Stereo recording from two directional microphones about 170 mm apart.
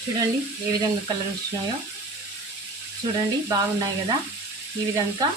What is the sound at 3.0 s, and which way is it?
Speech, 25° right (ahead or behind).